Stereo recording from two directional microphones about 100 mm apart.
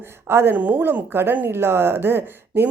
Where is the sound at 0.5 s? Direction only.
15° right (ahead or behind).